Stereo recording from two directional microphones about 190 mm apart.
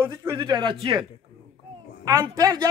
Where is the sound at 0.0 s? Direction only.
15° right (ahead or behind).